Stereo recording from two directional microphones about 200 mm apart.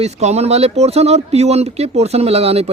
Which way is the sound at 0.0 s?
35° right (ahead or behind).